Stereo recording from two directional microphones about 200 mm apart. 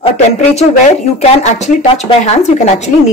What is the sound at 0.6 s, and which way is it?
Speech, 35° left (ahead or behind).